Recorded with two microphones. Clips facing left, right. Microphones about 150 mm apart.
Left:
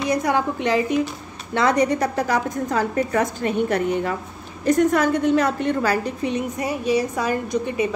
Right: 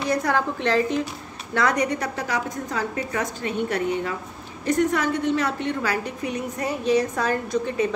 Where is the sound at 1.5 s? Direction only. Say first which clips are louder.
Left 4 dB; 25° left (ahead or behind); by 6.1 s 45° left (ahead or behind).